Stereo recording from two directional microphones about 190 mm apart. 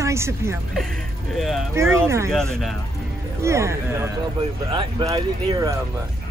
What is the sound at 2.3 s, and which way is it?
Speech, 5° left (ahead or behind).